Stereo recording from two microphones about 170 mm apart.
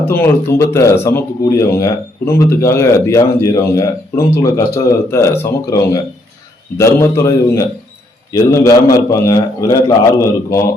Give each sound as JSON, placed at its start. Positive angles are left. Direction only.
{"t": 0.0, "sound": "a man's voice", "side_deg": 15}